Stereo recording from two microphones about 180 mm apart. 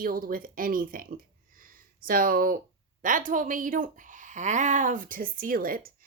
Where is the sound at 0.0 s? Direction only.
50° right (ahead or behind).